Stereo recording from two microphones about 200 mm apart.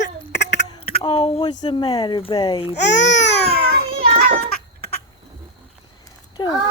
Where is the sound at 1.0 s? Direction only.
25° left (ahead or behind).